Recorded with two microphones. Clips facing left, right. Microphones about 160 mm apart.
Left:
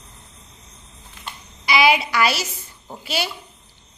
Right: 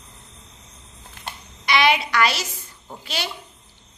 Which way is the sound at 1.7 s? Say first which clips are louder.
Left 2 dB; 5° left (ahead or behind).